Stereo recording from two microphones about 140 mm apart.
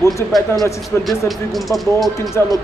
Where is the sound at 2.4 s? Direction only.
15° left (ahead or behind).